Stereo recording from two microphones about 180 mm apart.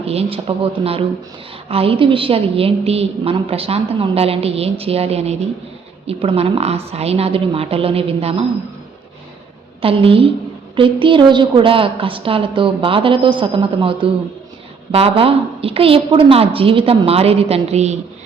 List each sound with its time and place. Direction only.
0.0 s a woman's voice: 35° right (ahead or behind)
9.8 s a woman's voice: 30° right (ahead or behind)